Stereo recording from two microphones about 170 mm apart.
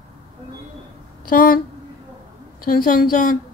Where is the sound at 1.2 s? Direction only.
55° left (ahead or behind).